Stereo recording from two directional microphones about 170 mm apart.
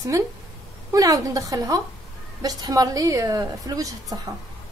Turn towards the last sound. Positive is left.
turn(degrees=-20)  # may be behind; listen again after turning